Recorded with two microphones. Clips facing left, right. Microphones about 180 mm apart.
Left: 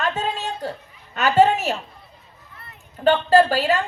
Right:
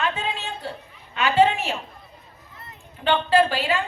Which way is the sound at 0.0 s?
40° left (ahead or behind).